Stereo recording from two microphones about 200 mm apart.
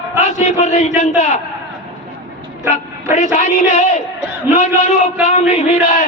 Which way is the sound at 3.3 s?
35° left (ahead or behind).